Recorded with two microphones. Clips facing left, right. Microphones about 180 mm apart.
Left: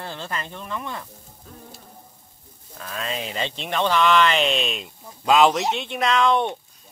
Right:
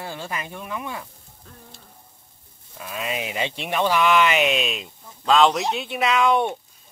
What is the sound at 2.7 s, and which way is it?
Speech, 10° right (ahead or behind).